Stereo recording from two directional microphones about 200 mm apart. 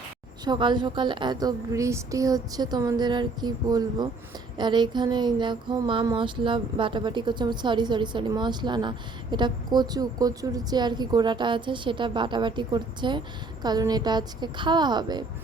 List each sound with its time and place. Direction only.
0.4 s speech: 25° right (ahead or behind)